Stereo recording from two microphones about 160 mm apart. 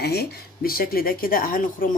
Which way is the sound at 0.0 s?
85° left.